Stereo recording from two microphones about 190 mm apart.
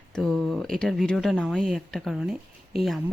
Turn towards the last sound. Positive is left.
turn(degrees=0)  # may be behind; listen again after turning